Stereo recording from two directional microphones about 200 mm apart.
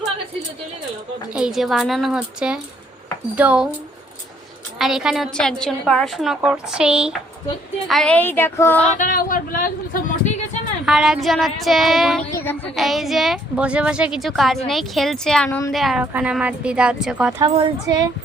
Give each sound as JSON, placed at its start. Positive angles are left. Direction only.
{"t": 1.3, "sound": "a woman's voice", "side_deg": -5}
{"t": 4.8, "sound": "a woman's voice", "side_deg": 0}
{"t": 9.0, "sound": "speech", "side_deg": 45}
{"t": 10.8, "sound": "a woman's voice", "side_deg": -5}
{"t": 15.4, "sound": "a woman's voice", "side_deg": 15}
{"t": 15.7, "sound": "a woman's voice", "side_deg": 0}
{"t": 17.3, "sound": "speech", "side_deg": -20}